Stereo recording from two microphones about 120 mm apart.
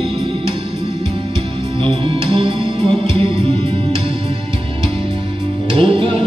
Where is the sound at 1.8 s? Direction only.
45° right (ahead or behind).